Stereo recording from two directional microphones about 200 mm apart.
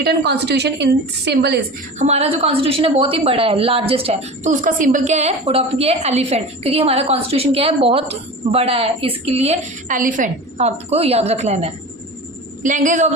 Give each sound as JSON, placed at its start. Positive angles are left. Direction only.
{"t": 0.0, "sound": "a woman's voice", "side_deg": -55}
{"t": 2.0, "sound": "a woman's voice", "side_deg": -30}